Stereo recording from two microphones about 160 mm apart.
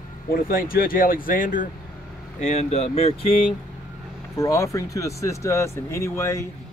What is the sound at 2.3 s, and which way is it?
Speech, 45° left (ahead or behind).